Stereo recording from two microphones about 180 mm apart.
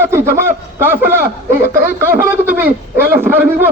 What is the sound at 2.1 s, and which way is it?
A man's voice, 10° right (ahead or behind).